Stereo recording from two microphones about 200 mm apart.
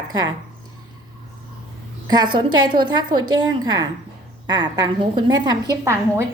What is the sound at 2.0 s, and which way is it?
A woman's voice, 20° right (ahead or behind).